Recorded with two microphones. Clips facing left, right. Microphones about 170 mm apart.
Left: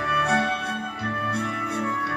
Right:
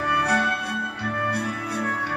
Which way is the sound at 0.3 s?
25° left (ahead or behind).